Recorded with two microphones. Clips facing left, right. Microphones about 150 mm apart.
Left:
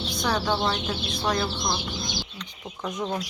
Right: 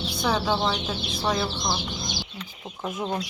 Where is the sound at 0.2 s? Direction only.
5° right (ahead or behind).